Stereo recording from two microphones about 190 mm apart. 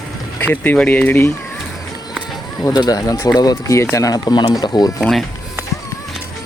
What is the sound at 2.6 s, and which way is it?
Speech, 20° left (ahead or behind).